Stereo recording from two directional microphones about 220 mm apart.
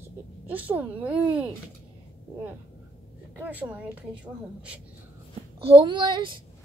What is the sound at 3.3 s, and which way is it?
A woman's voice, 5° right (ahead or behind).